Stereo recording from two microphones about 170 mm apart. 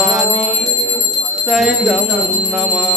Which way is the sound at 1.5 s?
Centre (ahead or behind).